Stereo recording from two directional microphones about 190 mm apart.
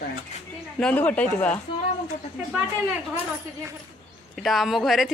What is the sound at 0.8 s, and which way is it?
Speech, 5° left (ahead or behind).